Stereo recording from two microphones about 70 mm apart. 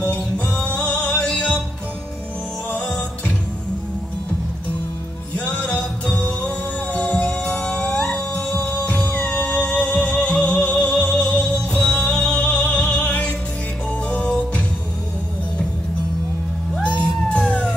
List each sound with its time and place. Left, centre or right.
0.0 s music: centre
2.7 s music: centre
5.3 s music: centre
16.8 s music: centre